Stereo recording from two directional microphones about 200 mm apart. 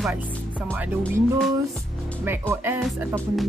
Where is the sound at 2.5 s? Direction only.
10° right (ahead or behind).